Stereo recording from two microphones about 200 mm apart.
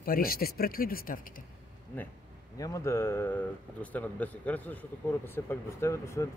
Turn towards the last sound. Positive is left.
turn(degrees=15)  # may be behind; listen again after turning